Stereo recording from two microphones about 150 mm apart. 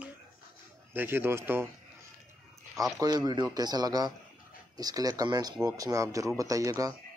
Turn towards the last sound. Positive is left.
turn(degrees=-20)  # may be behind; listen again after turning